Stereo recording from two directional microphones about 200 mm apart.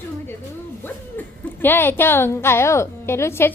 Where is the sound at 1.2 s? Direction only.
10° left (ahead or behind).